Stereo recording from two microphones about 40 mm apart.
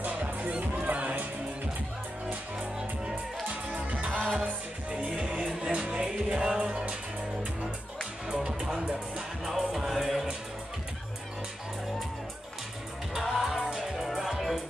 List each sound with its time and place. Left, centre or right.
0.1 s music: right
3.4 s music: right
5.6 s music: right
8.5 s music: right
9.4 s music: centre
13.1 s music: centre